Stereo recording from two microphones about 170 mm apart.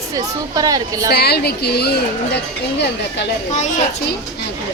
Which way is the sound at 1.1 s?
70° left (ahead or behind).